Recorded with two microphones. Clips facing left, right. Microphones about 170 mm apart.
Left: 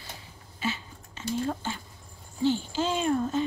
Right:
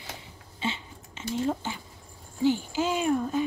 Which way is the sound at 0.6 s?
25° right (ahead or behind).